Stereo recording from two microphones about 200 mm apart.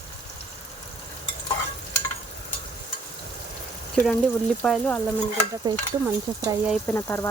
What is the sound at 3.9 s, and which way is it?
Speech, 5° left (ahead or behind).